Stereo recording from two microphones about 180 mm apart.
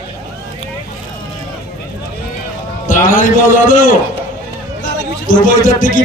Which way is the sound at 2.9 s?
45° left (ahead or behind).